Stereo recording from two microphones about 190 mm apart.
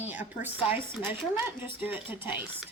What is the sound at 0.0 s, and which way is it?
A woman's voice, 10° right (ahead or behind).